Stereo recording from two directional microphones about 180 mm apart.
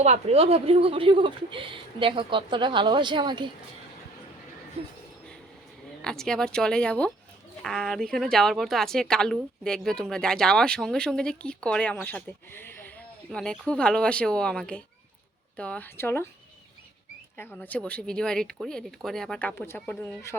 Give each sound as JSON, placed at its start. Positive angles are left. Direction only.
{"t": 0.0, "sound": "speech", "side_deg": -35}
{"t": 4.8, "sound": "speech", "side_deg": -35}
{"t": 6.0, "sound": "speech", "side_deg": 5}
{"t": 17.6, "sound": "speech", "side_deg": 5}